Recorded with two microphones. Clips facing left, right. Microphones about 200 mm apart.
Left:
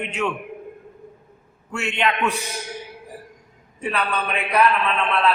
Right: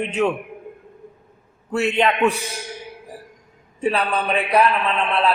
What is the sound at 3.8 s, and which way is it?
Speech, 30° right (ahead or behind).